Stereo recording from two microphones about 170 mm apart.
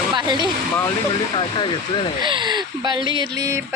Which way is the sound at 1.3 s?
25° left (ahead or behind).